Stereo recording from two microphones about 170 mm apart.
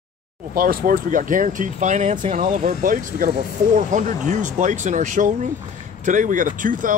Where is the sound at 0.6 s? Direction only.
55° right (ahead or behind).